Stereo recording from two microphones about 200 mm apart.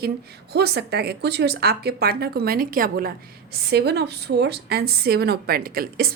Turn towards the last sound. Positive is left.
turn(degrees=-50)  # may be behind; listen again after turning